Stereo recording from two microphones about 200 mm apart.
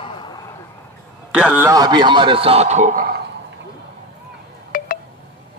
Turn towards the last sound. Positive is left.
turn(degrees=45)  # may be behind; listen again after turning